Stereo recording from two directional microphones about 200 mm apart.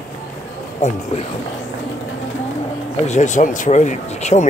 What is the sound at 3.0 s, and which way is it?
Speech, 35° left (ahead or behind).